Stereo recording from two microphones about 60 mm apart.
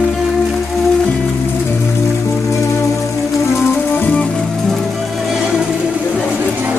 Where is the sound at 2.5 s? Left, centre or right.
Left.